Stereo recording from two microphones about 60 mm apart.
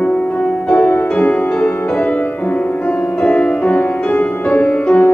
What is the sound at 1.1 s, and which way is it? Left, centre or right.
Music, left.